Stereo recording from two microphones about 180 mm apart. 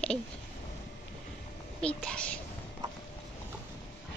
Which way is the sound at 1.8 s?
5° left (ahead or behind).